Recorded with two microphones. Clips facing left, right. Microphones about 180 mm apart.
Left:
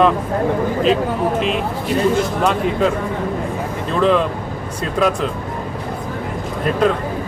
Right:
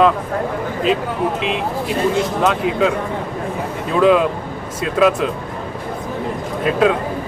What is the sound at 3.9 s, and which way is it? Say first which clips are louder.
Speech: right 3 dB; 5° right (ahead or behind).